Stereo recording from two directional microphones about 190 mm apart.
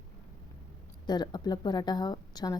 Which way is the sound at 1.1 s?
20° left (ahead or behind).